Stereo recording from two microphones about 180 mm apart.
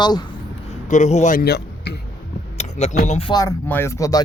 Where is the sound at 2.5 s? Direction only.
35° left (ahead or behind).